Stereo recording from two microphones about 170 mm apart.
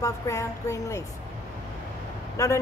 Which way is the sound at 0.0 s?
20° left (ahead or behind).